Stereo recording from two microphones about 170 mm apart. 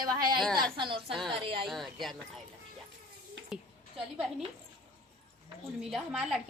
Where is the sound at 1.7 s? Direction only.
Centre (ahead or behind).